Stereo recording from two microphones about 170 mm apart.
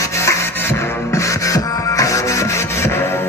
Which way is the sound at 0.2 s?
15° left (ahead or behind).